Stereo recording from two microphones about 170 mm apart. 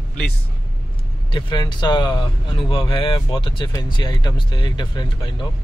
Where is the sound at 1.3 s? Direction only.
25° left (ahead or behind).